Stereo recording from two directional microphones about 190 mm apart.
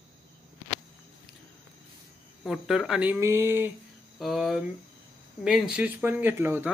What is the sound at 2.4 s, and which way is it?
Speech, centre (ahead or behind).